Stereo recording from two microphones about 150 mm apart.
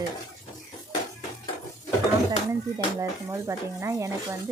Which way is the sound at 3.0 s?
20° right (ahead or behind).